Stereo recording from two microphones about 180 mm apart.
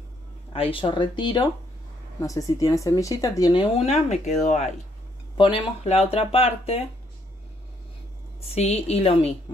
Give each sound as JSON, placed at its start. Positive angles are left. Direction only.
{"t": 0.5, "sound": "speech", "side_deg": 30}
{"t": 8.5, "sound": "speech", "side_deg": 35}